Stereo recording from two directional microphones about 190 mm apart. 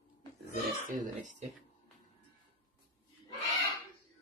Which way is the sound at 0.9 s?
40° right (ahead or behind).